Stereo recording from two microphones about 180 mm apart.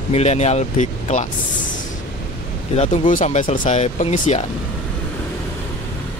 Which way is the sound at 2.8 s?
45° left (ahead or behind).